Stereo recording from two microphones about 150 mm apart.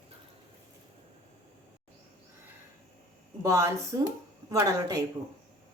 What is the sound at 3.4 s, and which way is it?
Speech, 20° right (ahead or behind).